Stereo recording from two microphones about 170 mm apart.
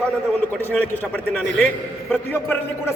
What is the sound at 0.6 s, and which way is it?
Speech, 10° left (ahead or behind).